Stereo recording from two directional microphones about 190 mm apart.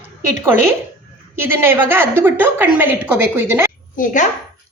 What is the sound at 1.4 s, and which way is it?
A woman's voice, 10° right (ahead or behind).